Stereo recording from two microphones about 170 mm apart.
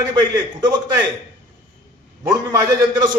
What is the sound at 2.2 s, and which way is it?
Speech, 15° right (ahead or behind).